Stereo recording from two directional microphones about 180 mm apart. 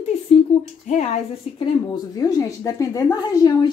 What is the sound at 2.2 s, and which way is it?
A woman's voice, 20° left (ahead or behind).